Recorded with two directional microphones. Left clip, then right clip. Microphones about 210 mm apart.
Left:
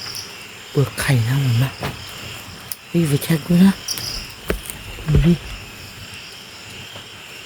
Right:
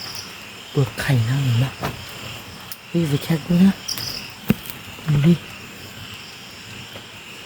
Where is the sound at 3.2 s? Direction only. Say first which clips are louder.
Left 2 dB; 20° left (ahead or behind).